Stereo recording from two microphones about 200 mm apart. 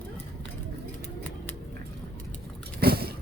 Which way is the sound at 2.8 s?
50° right (ahead or behind).